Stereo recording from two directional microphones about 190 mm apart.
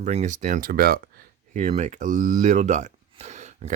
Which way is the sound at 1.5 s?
40° right (ahead or behind).